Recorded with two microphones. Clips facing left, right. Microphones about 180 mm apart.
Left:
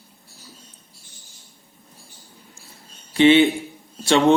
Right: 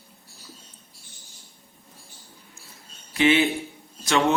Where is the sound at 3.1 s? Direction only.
30° left (ahead or behind).